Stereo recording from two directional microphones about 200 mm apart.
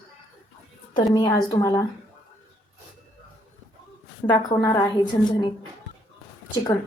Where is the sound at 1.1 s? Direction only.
20° left (ahead or behind).